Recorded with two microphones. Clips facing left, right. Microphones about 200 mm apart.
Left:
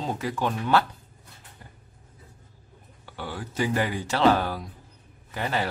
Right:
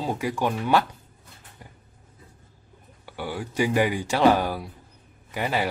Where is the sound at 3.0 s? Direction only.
10° right (ahead or behind).